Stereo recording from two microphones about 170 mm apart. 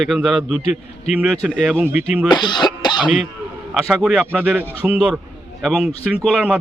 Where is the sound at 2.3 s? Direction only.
25° left (ahead or behind).